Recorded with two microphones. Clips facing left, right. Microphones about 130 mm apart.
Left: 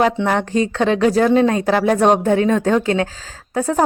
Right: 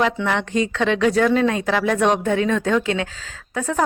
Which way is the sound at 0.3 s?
40° left (ahead or behind).